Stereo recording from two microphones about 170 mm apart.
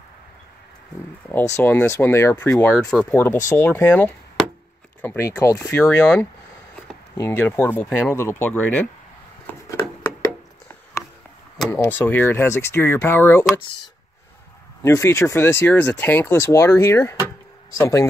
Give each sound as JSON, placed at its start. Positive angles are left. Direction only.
{"t": 1.6, "sound": "speech", "side_deg": 10}
{"t": 9.5, "sound": "a sound", "side_deg": 20}
{"t": 11.7, "sound": "speech", "side_deg": 15}
{"t": 14.8, "sound": "speech", "side_deg": 15}